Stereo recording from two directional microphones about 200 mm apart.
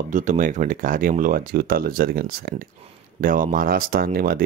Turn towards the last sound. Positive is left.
turn(degrees=-45)  # may be behind; listen again after turning